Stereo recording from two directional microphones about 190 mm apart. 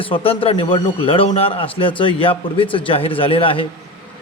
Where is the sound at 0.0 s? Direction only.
30° left (ahead or behind).